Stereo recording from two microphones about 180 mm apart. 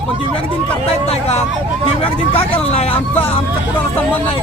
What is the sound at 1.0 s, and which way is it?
Speech, 35° left (ahead or behind).